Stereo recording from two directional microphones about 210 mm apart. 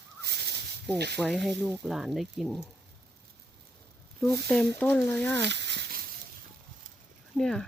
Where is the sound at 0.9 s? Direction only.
50° right (ahead or behind).